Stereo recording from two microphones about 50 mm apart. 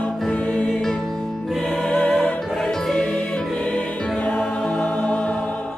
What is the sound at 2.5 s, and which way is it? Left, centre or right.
Music, centre.